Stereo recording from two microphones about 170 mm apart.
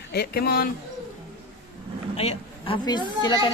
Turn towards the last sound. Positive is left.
turn(degrees=25)  # may be behind; listen again after turning